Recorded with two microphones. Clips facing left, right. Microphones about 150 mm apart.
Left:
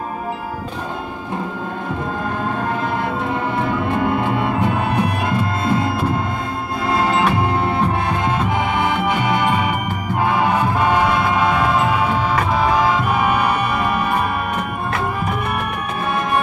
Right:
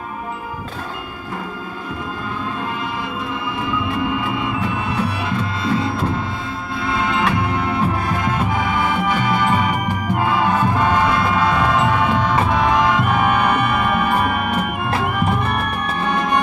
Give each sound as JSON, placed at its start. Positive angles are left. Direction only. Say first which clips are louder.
{"t": 3.5, "sound": "music", "louder": "left 1 dB", "side_deg": 55}
{"t": 8.7, "sound": "music", "louder": "left 1 dB", "side_deg": 20}
{"t": 10.6, "sound": "music", "louder": "even", "side_deg": 10}